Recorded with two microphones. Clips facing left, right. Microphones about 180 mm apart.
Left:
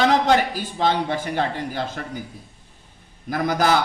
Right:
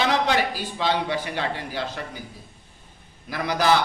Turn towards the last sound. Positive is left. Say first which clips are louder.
# left 2 dB
turn(degrees=50)  # may be behind; listen again after turning